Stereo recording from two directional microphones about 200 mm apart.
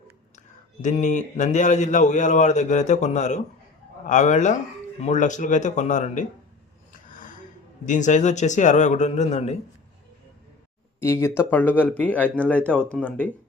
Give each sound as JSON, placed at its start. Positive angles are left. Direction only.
{"t": 0.3, "sound": "speech", "side_deg": 35}
{"t": 7.1, "sound": "a sound", "side_deg": 40}
{"t": 7.9, "sound": "speech", "side_deg": 40}
{"t": 11.0, "sound": "speech", "side_deg": 10}